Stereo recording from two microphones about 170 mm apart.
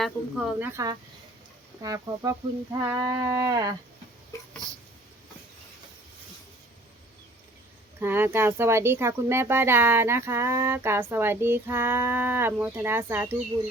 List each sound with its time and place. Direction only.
0.0 s speech: 5° right (ahead or behind)
0.7 s a sound: 20° right (ahead or behind)
7.9 s speech: 10° right (ahead or behind)